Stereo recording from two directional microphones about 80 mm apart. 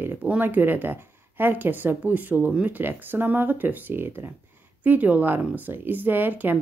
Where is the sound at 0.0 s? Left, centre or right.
Right.